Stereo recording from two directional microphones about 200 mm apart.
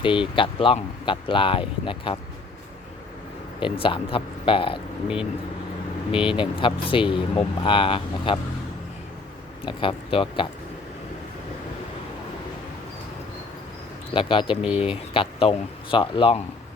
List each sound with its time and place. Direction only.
0.0 s speech: 25° left (ahead or behind)
3.6 s speech: 25° left (ahead or behind)
5.0 s speech: 5° right (ahead or behind)
6.1 s speech: 25° left (ahead or behind)
9.6 s speech: 25° left (ahead or behind)
14.1 s speech: 25° left (ahead or behind)